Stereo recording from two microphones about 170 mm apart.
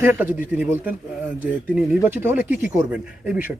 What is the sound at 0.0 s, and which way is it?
Speech, 15° right (ahead or behind).